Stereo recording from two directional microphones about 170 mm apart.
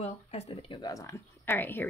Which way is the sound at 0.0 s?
35° left (ahead or behind).